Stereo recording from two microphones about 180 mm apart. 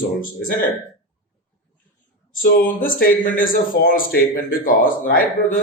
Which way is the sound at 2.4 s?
55° left (ahead or behind).